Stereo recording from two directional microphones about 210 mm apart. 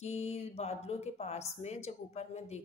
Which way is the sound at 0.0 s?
30° left (ahead or behind).